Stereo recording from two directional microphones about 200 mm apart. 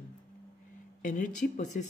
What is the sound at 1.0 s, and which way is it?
Speech, 40° left (ahead or behind).